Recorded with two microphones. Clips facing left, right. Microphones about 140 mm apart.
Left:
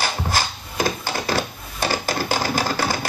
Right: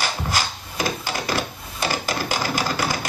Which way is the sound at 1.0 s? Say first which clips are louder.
Left 2 dB; 30° left (ahead or behind).